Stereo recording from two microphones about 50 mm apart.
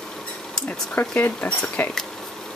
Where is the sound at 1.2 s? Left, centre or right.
Left.